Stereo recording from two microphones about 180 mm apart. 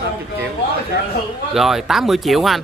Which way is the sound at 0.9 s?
60° left (ahead or behind).